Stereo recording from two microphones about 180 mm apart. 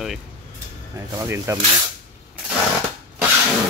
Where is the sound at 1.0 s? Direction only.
15° right (ahead or behind).